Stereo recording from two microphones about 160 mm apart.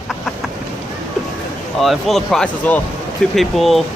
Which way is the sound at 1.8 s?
Centre (ahead or behind).